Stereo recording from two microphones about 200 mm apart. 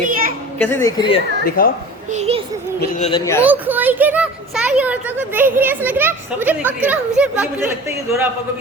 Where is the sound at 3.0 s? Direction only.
30° left (ahead or behind).